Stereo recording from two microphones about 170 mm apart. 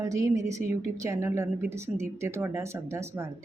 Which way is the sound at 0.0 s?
20° right (ahead or behind).